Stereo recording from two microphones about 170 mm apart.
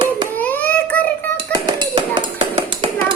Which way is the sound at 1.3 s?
25° right (ahead or behind).